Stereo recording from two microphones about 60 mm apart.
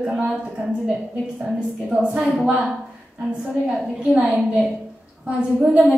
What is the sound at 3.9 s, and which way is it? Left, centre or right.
A woman's voice, centre.